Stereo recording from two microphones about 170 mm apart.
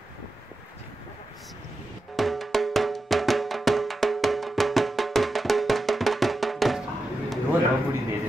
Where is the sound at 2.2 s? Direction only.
Centre (ahead or behind).